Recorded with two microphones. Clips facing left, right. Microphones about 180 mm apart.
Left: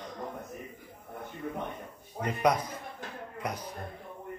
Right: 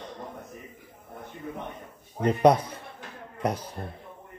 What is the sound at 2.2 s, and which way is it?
A man's voice, 30° right (ahead or behind).